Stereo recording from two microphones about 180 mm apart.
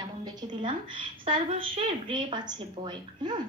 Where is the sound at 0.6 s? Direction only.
30° right (ahead or behind).